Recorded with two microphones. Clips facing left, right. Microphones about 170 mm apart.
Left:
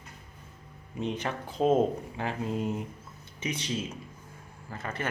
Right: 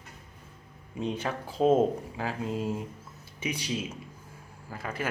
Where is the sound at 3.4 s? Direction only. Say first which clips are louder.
Even; 10° right (ahead or behind).